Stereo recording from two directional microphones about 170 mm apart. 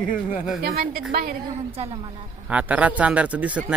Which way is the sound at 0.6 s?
65° right (ahead or behind).